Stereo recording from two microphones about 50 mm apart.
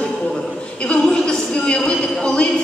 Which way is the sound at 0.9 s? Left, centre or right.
Centre.